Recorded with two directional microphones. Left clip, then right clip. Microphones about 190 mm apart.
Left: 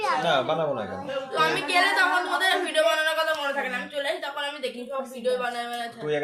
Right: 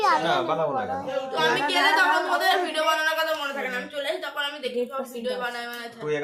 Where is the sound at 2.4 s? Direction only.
5° right (ahead or behind).